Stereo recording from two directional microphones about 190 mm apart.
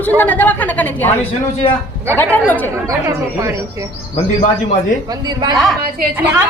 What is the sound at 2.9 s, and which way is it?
Speech, 15° right (ahead or behind).